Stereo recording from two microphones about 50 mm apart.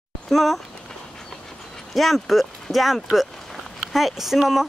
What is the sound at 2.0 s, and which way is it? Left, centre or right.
Speech, centre.